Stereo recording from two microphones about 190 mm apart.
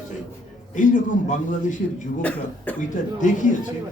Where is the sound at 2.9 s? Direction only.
45° left (ahead or behind).